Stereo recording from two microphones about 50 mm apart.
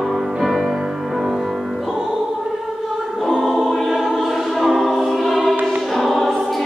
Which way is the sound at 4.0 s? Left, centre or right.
Centre.